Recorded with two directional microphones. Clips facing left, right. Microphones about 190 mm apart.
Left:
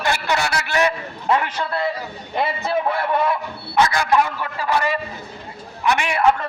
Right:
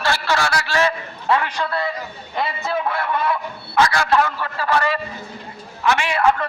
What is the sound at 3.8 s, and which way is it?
A man's voice, 20° left (ahead or behind).